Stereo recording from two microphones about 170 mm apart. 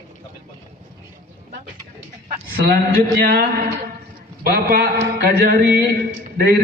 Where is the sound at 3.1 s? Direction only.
60° right (ahead or behind).